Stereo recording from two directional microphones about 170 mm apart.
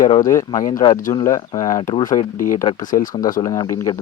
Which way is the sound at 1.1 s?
20° left (ahead or behind).